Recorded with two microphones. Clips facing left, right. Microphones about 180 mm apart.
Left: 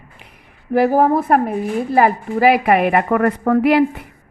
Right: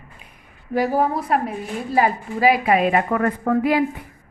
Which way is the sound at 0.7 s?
60° left (ahead or behind).